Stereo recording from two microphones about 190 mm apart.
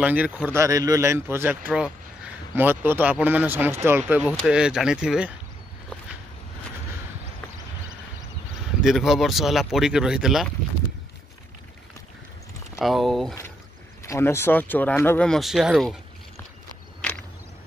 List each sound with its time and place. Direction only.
0.0 s speech: 10° right (ahead or behind)
8.8 s speech: centre (ahead or behind)
12.7 s speech: centre (ahead or behind)
14.0 s speech: 15° left (ahead or behind)